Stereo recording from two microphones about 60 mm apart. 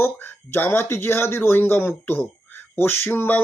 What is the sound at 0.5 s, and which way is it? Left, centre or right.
Speech, left.